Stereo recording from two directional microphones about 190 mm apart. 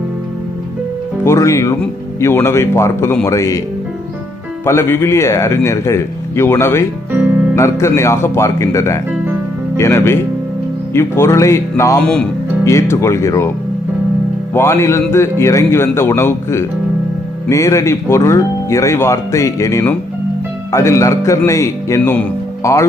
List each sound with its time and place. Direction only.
1.2 s speech: 15° left (ahead or behind)
4.6 s speech: 15° left (ahead or behind)
7.1 s music: 10° right (ahead or behind)
7.5 s speech: 15° left (ahead or behind)
12.0 s speech: 5° left (ahead or behind)
14.5 s speech: 15° left (ahead or behind)